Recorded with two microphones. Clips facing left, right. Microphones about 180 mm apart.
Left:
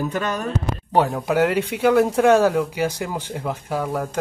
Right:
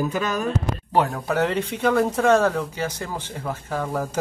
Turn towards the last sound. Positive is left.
turn(degrees=5)  # may be behind; listen again after turning